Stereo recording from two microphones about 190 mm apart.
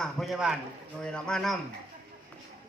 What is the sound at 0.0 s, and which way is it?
A man's voice, centre (ahead or behind).